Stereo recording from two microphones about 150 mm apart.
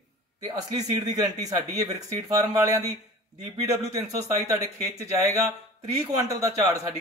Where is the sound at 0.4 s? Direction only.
25° right (ahead or behind).